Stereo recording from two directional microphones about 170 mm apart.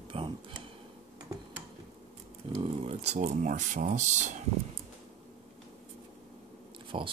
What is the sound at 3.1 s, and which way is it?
Speech, 50° right (ahead or behind).